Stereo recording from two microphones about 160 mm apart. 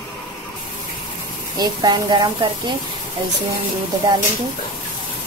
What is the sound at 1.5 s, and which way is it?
Speech, 25° right (ahead or behind).